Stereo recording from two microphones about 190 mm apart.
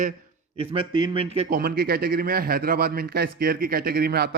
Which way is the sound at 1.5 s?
50° right (ahead or behind).